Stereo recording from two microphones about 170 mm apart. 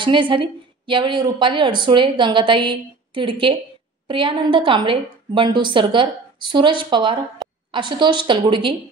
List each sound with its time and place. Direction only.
0.0 s a woman's voice: 30° right (ahead or behind)